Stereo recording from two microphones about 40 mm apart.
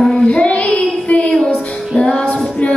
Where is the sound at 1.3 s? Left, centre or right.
Left.